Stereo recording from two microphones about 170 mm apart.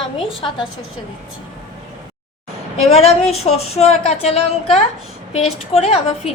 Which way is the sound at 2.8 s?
35° left (ahead or behind).